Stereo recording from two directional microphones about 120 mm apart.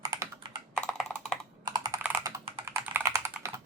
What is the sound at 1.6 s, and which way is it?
Computer keyboard, 30° right (ahead or behind).